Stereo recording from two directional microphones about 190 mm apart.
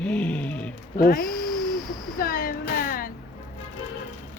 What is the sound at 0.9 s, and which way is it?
Speech, 50° left (ahead or behind).